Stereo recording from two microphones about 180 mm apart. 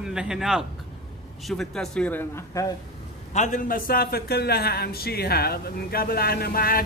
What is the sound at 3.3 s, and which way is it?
A woman's voice, 45° left (ahead or behind).